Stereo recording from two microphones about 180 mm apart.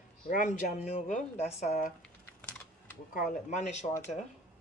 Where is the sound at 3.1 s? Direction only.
50° left (ahead or behind).